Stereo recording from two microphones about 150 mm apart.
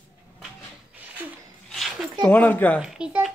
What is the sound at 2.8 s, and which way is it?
Speech, 5° right (ahead or behind).